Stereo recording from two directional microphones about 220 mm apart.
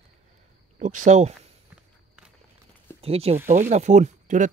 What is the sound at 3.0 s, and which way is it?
Speech, 25° right (ahead or behind).